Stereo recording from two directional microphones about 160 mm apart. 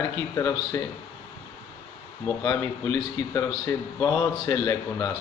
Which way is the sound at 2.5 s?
20° left (ahead or behind).